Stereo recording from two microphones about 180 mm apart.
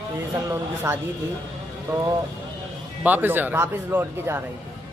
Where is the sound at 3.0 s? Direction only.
10° right (ahead or behind).